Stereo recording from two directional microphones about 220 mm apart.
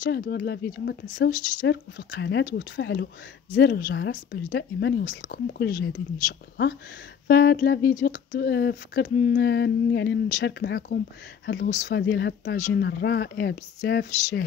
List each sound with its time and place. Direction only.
0.0 s speech: 50° left (ahead or behind)
7.2 s speech: 45° left (ahead or behind)